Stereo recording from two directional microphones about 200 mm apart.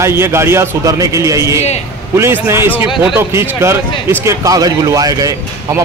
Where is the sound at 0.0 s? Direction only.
15° right (ahead or behind).